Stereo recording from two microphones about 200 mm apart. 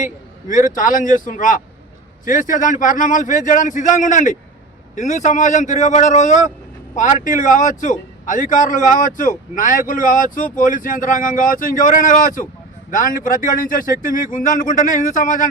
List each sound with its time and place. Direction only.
0.5 s a man's voice: 40° left (ahead or behind)